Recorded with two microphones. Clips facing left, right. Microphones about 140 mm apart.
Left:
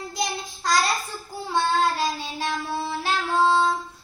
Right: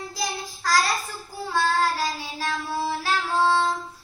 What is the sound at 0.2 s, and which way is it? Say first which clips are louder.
Child singing: left 2 dB; 20° left (ahead or behind).